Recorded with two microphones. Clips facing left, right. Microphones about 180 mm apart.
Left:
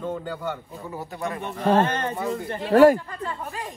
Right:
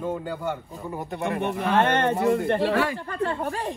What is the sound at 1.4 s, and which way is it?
Speech, 60° right (ahead or behind).